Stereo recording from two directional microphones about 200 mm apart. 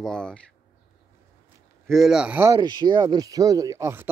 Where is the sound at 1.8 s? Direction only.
Centre (ahead or behind).